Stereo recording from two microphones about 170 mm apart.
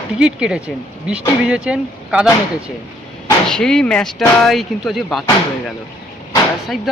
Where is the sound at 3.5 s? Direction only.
5° left (ahead or behind).